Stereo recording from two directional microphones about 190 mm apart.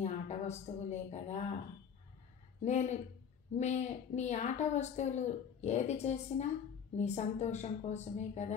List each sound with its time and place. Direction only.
0.0 s a woman's voice: 35° left (ahead or behind)
2.6 s a woman's voice: 35° left (ahead or behind)